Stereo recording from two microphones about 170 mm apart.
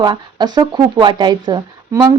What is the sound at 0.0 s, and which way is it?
Speech, 25° right (ahead or behind).